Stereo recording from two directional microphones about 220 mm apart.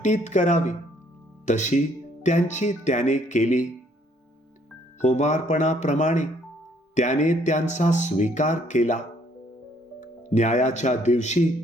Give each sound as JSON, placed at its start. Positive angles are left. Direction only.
{"t": 0.0, "sound": "speech", "side_deg": 35}
{"t": 5.0, "sound": "speech", "side_deg": 30}
{"t": 10.0, "sound": "speech", "side_deg": 35}